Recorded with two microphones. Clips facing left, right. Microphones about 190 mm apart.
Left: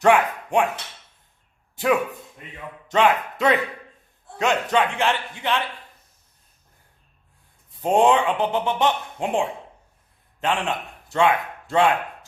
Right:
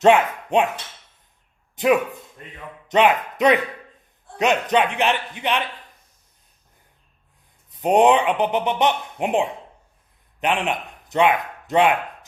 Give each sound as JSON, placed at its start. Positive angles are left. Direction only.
{"t": 0.0, "sound": "speech", "side_deg": -20}
{"t": 1.7, "sound": "speech", "side_deg": -20}
{"t": 2.4, "sound": "a sound", "side_deg": 5}
{"t": 2.9, "sound": "speech", "side_deg": -20}
{"t": 7.7, "sound": "speech", "side_deg": -20}